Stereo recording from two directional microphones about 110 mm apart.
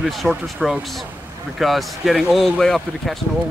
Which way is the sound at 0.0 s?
Centre (ahead or behind).